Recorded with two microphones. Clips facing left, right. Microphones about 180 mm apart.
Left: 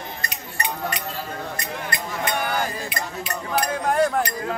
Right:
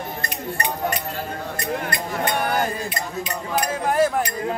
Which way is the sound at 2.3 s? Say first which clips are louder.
Right 2 dB; 50° right (ahead or behind).